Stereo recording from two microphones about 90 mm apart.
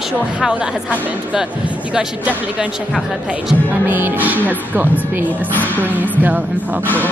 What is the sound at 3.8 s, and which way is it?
Music, 20° right (ahead or behind).